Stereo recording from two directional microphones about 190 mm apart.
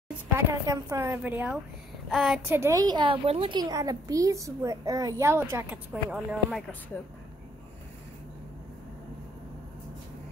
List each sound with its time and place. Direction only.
0.5 s a woman's voice: 15° right (ahead or behind)